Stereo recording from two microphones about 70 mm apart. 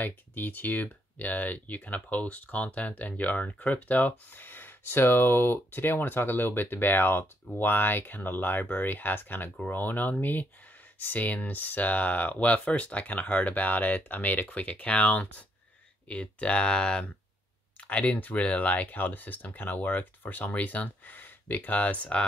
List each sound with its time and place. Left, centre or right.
0.0 s speech: left